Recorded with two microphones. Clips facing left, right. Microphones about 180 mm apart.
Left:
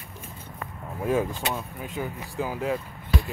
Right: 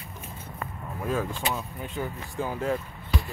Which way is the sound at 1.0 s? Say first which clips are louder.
Left 4 dB; 20° left (ahead or behind).